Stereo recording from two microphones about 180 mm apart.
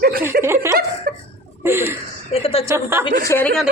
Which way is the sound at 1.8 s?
30° left (ahead or behind).